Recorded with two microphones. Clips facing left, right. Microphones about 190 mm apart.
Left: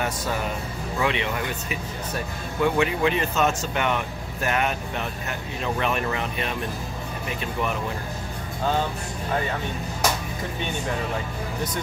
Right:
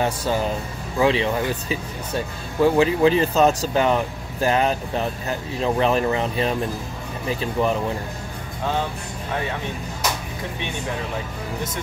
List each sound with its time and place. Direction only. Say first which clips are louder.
0.0 s speech: right 5 dB; 30° right (ahead or behind)